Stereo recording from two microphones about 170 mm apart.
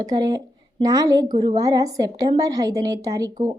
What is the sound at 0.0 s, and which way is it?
A woman's voice, 20° right (ahead or behind).